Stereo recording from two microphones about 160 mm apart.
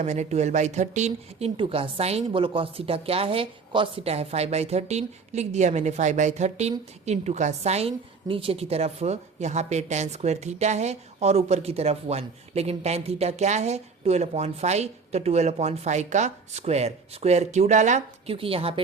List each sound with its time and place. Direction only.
0.0 s speech: 45° right (ahead or behind)
18.3 s a woman's voice: 35° right (ahead or behind)